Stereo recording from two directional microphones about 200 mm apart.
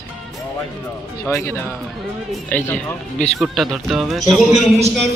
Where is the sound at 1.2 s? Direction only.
10° left (ahead or behind).